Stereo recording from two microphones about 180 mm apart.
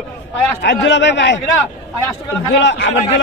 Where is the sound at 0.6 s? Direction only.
85° left.